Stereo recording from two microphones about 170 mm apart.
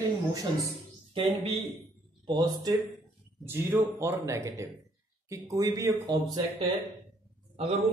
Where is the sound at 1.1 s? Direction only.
35° right (ahead or behind).